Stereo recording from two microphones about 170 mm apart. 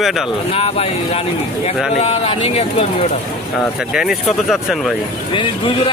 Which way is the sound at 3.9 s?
5° right (ahead or behind).